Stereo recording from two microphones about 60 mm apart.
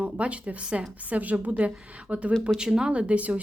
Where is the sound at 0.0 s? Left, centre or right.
Right.